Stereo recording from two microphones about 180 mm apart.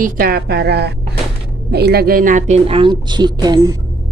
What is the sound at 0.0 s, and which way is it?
A woman's voice, 55° right (ahead or behind).